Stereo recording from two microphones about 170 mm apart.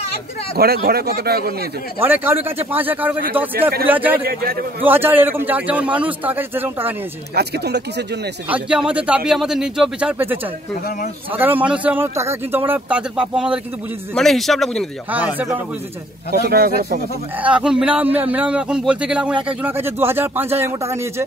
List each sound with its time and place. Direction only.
0.6 s speech: 65° right (ahead or behind)
2.0 s a man's voice: 10° right (ahead or behind)
4.2 s speech: 65° right (ahead or behind)
4.8 s a man's voice: 10° right (ahead or behind)
7.3 s speech: 75° right (ahead or behind)
8.5 s a man's voice: 5° right (ahead or behind)
15.0 s a man's voice: 10° right (ahead or behind)
16.3 s speech: 65° right (ahead or behind)
17.4 s a man's voice: 5° right (ahead or behind)